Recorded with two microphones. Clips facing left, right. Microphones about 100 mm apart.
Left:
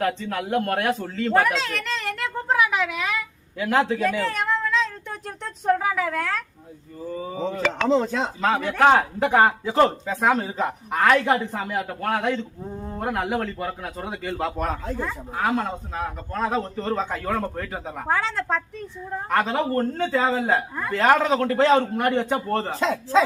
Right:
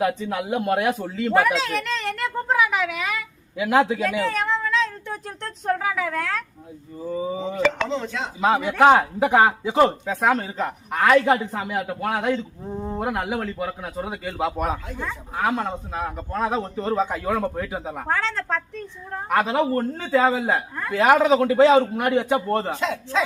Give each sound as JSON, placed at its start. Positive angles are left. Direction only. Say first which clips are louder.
{"t": 0.0, "sound": "speech", "louder": "right 2 dB", "side_deg": -15}
{"t": 3.6, "sound": "a man's voice", "louder": "right 2 dB", "side_deg": -10}
{"t": 7.0, "sound": "a man's voice", "louder": "right 2 dB", "side_deg": -10}
{"t": 7.9, "sound": "chopping", "louder": "left 6 dB", "side_deg": 35}
{"t": 8.4, "sound": "a man's voice", "louder": "right 3 dB", "side_deg": -15}
{"t": 12.7, "sound": "speech", "louder": "right 6 dB", "side_deg": -20}
{"t": 13.0, "sound": "a man's voice", "louder": "left 2 dB", "side_deg": -5}
{"t": 22.8, "sound": "chopping", "louder": "left 4 dB", "side_deg": 30}